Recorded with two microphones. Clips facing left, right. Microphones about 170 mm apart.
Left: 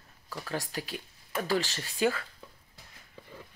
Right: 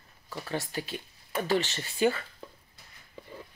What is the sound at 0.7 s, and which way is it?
Speech, centre (ahead or behind).